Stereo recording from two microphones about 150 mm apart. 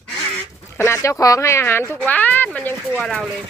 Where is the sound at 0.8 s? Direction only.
20° left (ahead or behind).